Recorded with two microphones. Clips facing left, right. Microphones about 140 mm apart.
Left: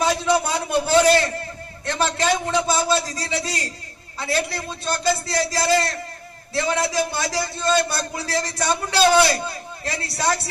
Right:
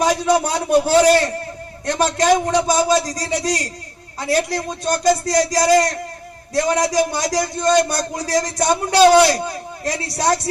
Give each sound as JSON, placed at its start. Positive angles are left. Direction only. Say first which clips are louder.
{"t": 0.0, "sound": "a man's voice", "louder": "right 3 dB", "side_deg": -40}